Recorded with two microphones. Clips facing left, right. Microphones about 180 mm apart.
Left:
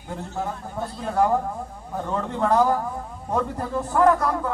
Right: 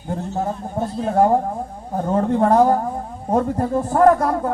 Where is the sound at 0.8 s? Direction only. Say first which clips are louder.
Right 5 dB; 45° right (ahead or behind).